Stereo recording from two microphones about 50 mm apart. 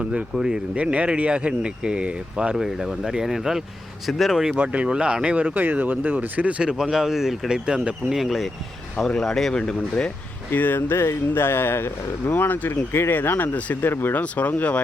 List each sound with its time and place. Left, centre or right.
0.3 s speech: centre
0.8 s speech: right
2.6 s speech: centre
4.5 s speech: right
5.5 s speech: right
6.6 s speech: centre
7.6 s speech: right
8.1 s speech: centre
9.0 s speech: centre
10.5 s speech: left
10.8 s speech: left
13.9 s speech: left
14.2 s speech: left